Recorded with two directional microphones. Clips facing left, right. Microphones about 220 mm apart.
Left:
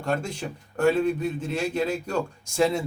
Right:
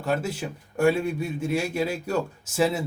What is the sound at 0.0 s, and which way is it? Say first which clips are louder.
A man's voice: right 1 dB; 5° right (ahead or behind).